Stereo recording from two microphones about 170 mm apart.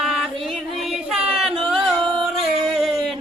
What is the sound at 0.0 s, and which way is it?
Music, centre (ahead or behind).